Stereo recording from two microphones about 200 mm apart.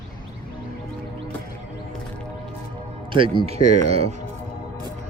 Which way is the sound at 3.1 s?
25° right (ahead or behind).